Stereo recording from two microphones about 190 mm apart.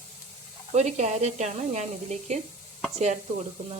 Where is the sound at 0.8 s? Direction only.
35° right (ahead or behind).